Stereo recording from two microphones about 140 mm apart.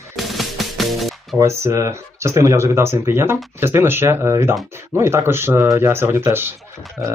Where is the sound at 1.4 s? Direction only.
20° right (ahead or behind).